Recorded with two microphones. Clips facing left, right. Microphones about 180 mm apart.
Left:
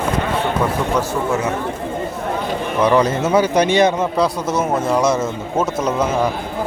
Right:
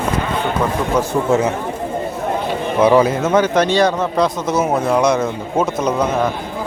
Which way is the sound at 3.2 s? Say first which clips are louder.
Even; 10° left (ahead or behind).